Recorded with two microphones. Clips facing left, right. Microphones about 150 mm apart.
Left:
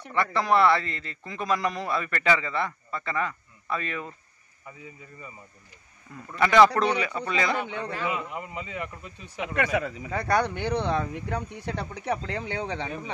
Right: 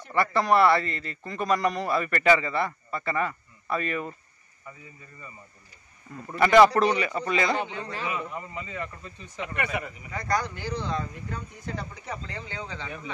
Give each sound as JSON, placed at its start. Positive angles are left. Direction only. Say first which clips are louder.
{"t": 0.1, "sound": "a man's voice", "louder": "right 1 dB", "side_deg": 0}
{"t": 6.3, "sound": "a man's voice", "louder": "right 1 dB", "side_deg": 0}
{"t": 7.6, "sound": "a man's voice", "louder": "left 2 dB", "side_deg": 60}
{"t": 8.3, "sound": "speech", "louder": "left 1 dB", "side_deg": 15}
{"t": 9.7, "sound": "speech", "louder": "left 5 dB", "side_deg": 90}